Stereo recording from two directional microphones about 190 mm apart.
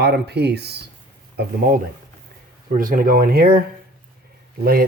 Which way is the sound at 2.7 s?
45° right (ahead or behind).